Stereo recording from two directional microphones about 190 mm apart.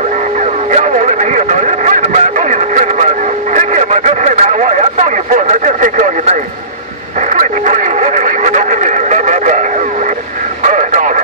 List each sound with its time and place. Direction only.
0.7 s radio: 40° right (ahead or behind)